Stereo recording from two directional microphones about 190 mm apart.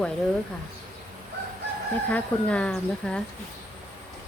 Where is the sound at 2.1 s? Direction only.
5° left (ahead or behind).